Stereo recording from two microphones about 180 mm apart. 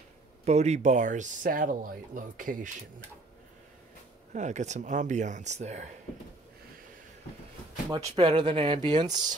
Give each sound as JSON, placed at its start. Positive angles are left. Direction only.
{"t": 0.5, "sound": "speech", "side_deg": -40}
{"t": 4.3, "sound": "speech", "side_deg": -40}
{"t": 8.2, "sound": "speech", "side_deg": -25}